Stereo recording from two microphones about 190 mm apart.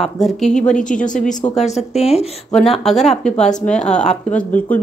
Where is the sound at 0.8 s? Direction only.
40° left (ahead or behind).